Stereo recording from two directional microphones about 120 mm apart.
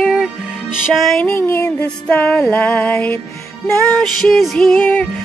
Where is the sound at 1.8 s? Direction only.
10° left (ahead or behind).